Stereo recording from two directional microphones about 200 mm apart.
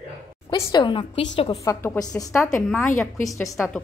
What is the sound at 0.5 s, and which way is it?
Speech, 20° left (ahead or behind).